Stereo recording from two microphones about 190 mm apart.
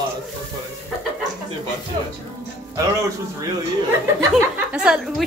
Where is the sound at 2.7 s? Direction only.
20° right (ahead or behind).